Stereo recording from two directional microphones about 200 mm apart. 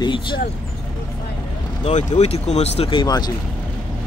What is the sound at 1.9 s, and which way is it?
Speech, 35° left (ahead or behind).